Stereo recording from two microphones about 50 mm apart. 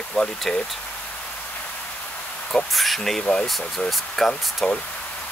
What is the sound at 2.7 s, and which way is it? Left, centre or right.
Speech, centre.